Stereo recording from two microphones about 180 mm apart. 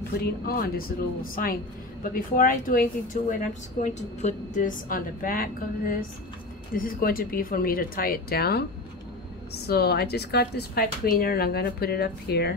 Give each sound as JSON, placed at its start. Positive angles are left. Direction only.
{"t": 0.1, "sound": "a woman's voice", "side_deg": 55}
{"t": 9.7, "sound": "a woman's voice", "side_deg": 60}